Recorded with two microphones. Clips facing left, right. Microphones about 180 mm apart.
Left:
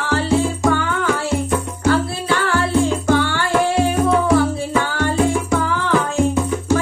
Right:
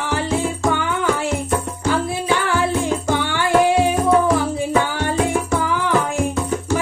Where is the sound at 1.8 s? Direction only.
15° right (ahead or behind).